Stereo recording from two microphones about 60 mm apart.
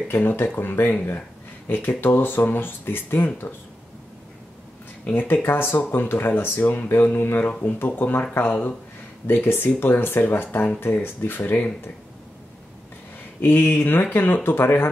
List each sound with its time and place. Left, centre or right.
0.1 s speech: left
5.1 s speech: left
13.4 s speech: left